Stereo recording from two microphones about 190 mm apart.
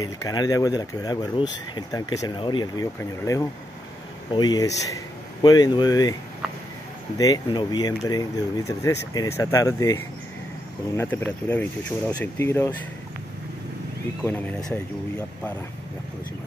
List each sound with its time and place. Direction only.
0.0 s speech: 20° left (ahead or behind)
7.2 s speech: 20° left (ahead or behind)
14.2 s speech: 10° left (ahead or behind)